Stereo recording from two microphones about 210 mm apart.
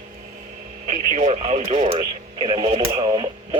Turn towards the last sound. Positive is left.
turn(degrees=-20)  # may be behind; listen again after turning